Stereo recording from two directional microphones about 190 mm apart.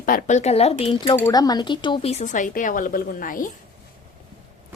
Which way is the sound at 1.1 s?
15° left (ahead or behind).